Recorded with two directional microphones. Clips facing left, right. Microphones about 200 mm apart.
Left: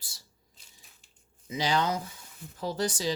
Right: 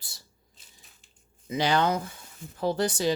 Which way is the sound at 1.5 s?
60° right (ahead or behind).